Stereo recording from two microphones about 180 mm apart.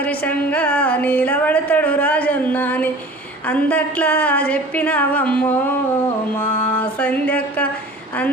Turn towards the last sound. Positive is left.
turn(degrees=5)  # may be behind; listen again after turning